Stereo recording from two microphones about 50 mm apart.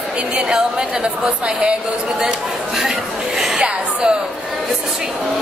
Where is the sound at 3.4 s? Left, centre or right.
Centre.